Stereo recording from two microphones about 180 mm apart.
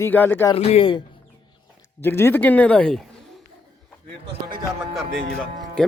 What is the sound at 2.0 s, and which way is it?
Speech, 10° left (ahead or behind).